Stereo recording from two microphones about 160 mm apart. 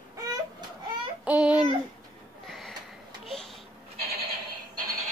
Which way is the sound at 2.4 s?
Centre (ahead or behind).